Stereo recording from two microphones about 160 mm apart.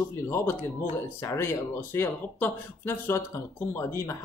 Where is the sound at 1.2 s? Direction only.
15° left (ahead or behind).